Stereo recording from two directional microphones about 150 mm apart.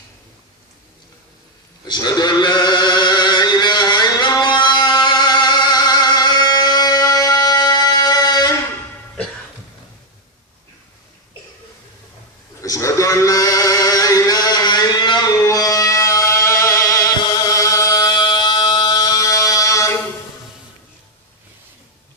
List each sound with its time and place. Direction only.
1.8 s male singing: 25° left (ahead or behind)
12.6 s a sound: 20° left (ahead or behind)
15.4 s music: 25° left (ahead or behind)